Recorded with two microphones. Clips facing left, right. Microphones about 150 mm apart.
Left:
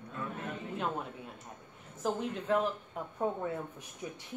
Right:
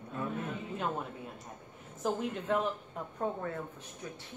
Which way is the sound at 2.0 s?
Centre (ahead or behind).